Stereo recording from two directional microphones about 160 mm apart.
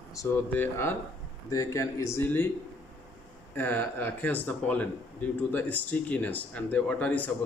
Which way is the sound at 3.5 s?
10° left (ahead or behind).